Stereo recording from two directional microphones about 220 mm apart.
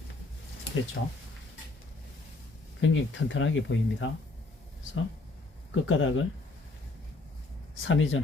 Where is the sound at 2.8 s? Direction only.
60° left (ahead or behind).